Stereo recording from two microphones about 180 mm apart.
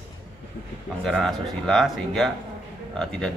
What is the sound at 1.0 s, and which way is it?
Speech, 5° left (ahead or behind).